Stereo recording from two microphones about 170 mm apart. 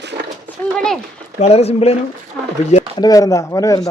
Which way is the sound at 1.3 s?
35° left (ahead or behind).